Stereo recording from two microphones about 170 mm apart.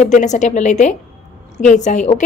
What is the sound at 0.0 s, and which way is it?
A woman's voice, 45° left (ahead or behind).